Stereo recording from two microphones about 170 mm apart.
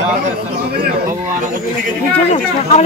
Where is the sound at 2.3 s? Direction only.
40° left (ahead or behind).